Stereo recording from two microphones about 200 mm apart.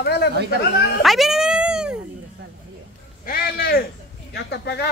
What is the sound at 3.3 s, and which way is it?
A man's voice, 50° left (ahead or behind).